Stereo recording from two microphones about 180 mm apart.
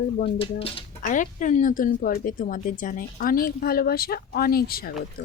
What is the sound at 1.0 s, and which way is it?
A woman's voice, 45° left (ahead or behind).